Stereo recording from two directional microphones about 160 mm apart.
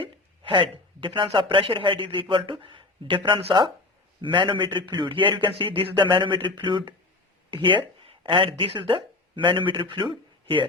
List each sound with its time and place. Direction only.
0.0 s a man's voice: 35° right (ahead or behind)